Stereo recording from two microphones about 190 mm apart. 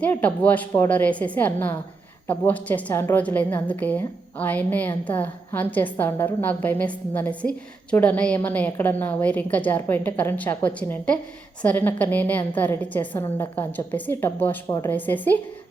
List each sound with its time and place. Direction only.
0.0 s a woman's voice: 5° left (ahead or behind)